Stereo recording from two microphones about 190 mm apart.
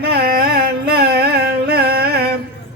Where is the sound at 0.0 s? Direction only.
55° right (ahead or behind).